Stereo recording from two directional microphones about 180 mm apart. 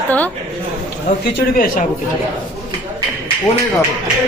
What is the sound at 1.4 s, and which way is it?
Speech, 50° left (ahead or behind).